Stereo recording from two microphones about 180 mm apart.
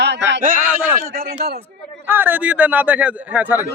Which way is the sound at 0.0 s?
75° right (ahead or behind).